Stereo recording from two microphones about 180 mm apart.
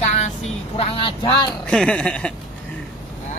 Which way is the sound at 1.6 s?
5° left (ahead or behind).